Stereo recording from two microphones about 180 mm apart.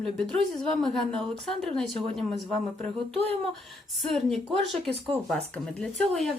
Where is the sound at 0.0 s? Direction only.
Centre (ahead or behind).